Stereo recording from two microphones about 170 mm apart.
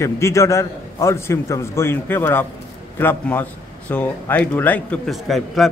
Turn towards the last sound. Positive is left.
turn(degrees=0)  # may be behind; listen again after turning